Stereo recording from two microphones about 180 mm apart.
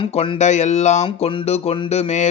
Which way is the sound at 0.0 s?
30° left (ahead or behind).